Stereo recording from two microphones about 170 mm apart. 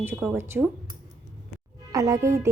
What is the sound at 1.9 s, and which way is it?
Speech, 20° right (ahead or behind).